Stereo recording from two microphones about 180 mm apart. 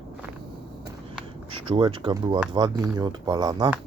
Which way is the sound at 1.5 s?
30° right (ahead or behind).